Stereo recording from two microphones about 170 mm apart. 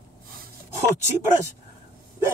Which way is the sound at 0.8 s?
15° right (ahead or behind).